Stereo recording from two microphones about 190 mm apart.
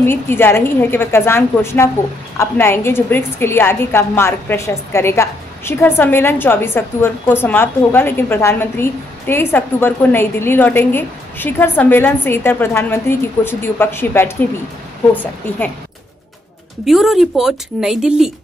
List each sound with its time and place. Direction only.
0.0 s a woman's voice: 10° left (ahead or behind)
16.8 s speech: centre (ahead or behind)